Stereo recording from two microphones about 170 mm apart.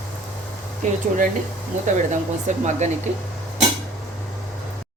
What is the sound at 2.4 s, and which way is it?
Speech, 45° right (ahead or behind).